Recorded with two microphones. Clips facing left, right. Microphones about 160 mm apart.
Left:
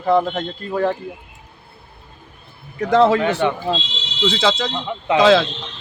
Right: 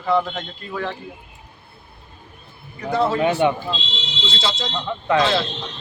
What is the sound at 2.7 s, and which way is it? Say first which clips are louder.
Speech: left 6 dB; 90° left.